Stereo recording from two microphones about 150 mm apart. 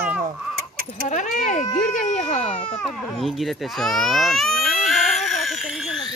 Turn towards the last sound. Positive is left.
turn(degrees=0)  # may be behind; listen again after turning